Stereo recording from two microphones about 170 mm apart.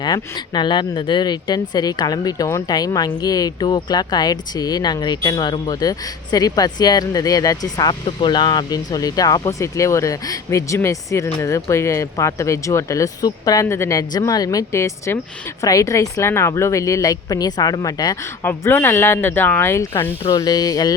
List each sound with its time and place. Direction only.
0.0 s a woman's voice: 25° left (ahead or behind)